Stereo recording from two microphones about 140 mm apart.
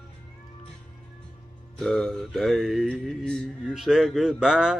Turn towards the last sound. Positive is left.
turn(degrees=-5)  # may be behind; listen again after turning